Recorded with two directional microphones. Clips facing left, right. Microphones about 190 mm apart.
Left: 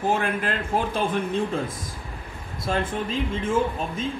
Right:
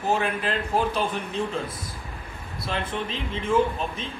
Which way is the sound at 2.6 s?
45° left (ahead or behind).